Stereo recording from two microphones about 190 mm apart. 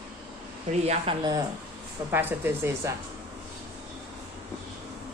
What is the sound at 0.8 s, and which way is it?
Speech, 30° right (ahead or behind).